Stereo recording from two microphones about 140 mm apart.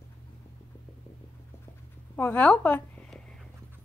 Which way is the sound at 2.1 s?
15° left (ahead or behind).